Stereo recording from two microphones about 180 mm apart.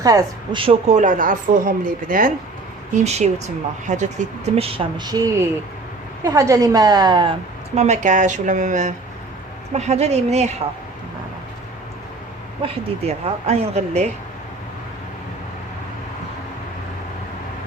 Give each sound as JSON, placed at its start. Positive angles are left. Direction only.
{"t": 0.0, "sound": "a woman's voice", "side_deg": -20}
{"t": 2.9, "sound": "a woman's voice", "side_deg": -40}
{"t": 7.8, "sound": "a woman's voice", "side_deg": -40}
{"t": 12.6, "sound": "speech", "side_deg": -35}